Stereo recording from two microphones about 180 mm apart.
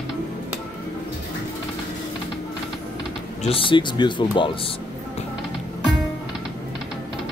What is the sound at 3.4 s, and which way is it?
Speech, 30° left (ahead or behind).